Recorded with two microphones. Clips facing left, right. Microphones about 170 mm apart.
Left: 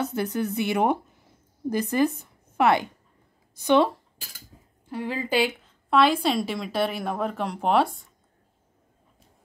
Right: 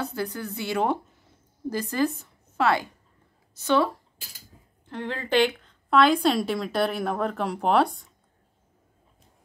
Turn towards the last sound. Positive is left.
turn(degrees=0)  # may be behind; listen again after turning